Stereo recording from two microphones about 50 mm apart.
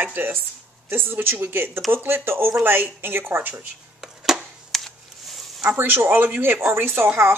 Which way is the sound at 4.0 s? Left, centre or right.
Centre.